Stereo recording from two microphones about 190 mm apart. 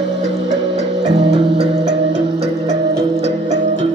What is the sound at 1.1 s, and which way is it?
Music, 65° right (ahead or behind).